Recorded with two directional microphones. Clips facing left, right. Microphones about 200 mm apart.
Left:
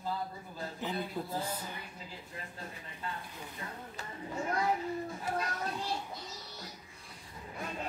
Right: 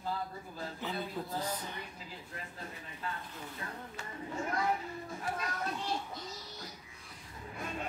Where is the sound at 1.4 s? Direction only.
10° left (ahead or behind).